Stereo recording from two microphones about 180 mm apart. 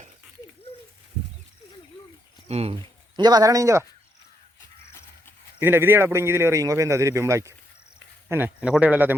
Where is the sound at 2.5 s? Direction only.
35° right (ahead or behind); by 3.8 s 15° right (ahead or behind).